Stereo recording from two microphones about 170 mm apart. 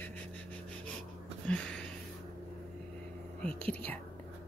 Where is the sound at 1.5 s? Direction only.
5° left (ahead or behind).